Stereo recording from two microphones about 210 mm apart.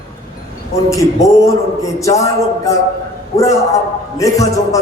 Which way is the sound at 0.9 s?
15° left (ahead or behind).